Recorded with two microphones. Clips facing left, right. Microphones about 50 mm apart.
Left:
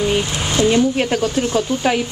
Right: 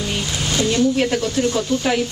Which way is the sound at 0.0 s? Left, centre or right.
Left.